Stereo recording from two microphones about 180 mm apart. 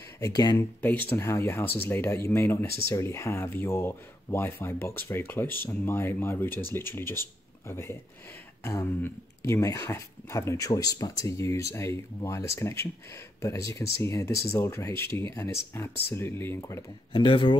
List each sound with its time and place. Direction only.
0.2 s speech: 20° left (ahead or behind)
0.7 s speech: 10° left (ahead or behind)
14.0 s speech: 15° left (ahead or behind)
17.1 s speech: 30° left (ahead or behind)